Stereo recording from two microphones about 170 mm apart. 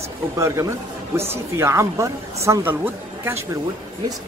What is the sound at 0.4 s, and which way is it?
Speech, 15° right (ahead or behind).